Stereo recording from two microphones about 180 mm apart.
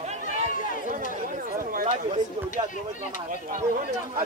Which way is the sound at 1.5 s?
50° right (ahead or behind).